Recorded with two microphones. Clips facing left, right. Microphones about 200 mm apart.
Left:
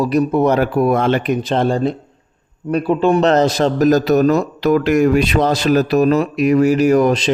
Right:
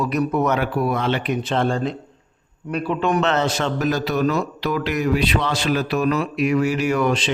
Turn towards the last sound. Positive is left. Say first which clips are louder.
# left 7 dB
turn(degrees=40)  # may be behind; listen again after turning